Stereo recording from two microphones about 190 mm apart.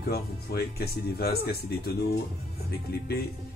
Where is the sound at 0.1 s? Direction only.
55° left (ahead or behind).